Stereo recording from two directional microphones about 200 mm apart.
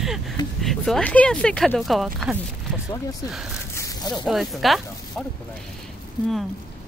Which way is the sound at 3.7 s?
15° left (ahead or behind).